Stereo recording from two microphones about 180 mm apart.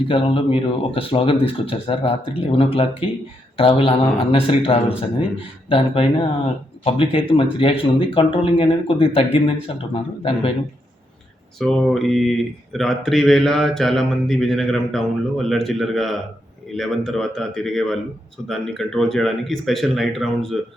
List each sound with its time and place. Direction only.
0.1 s speech: 30° left (ahead or behind)
11.6 s speech: centre (ahead or behind)